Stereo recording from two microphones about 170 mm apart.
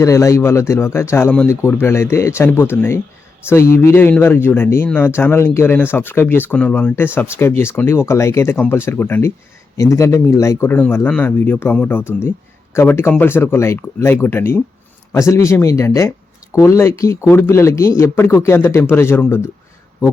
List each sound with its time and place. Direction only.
0.0 s speech: 20° left (ahead or behind)